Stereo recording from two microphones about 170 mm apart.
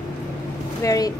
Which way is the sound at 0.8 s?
20° left (ahead or behind).